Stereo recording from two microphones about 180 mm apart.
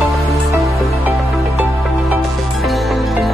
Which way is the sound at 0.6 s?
Centre (ahead or behind).